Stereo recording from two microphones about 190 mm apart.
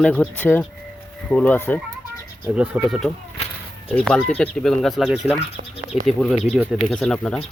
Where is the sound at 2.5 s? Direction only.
10° right (ahead or behind).